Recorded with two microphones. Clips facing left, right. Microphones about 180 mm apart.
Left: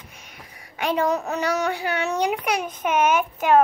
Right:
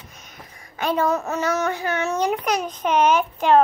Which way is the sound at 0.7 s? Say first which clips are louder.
Right 1 dB; 15° left (ahead or behind).